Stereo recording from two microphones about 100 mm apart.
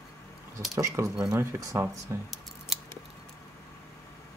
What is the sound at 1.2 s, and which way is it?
Speech, 30° right (ahead or behind).